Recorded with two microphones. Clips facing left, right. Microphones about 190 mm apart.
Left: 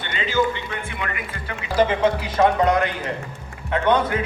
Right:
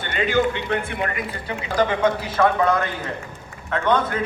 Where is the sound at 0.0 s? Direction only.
55° right (ahead or behind).